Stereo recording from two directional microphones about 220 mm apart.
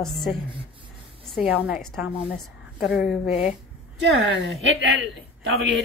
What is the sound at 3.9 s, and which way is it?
Speech, 55° right (ahead or behind).